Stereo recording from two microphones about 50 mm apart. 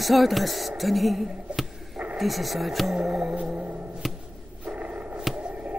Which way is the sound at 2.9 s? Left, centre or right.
Centre.